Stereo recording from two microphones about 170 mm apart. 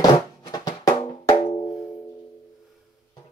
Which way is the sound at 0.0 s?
20° left (ahead or behind).